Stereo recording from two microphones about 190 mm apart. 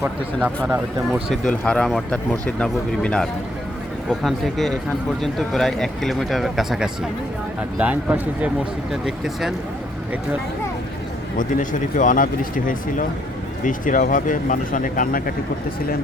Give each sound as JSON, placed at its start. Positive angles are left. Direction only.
{"t": 0.4, "sound": "speech", "side_deg": -10}
{"t": 1.3, "sound": "speech", "side_deg": 5}
{"t": 11.3, "sound": "speech", "side_deg": 40}